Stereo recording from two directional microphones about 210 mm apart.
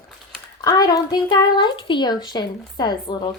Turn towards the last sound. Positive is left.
turn(degrees=20)  # may be behind; listen again after turning